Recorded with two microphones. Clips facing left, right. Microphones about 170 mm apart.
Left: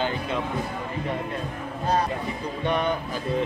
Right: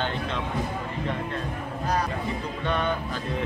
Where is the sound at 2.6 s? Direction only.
15° left (ahead or behind).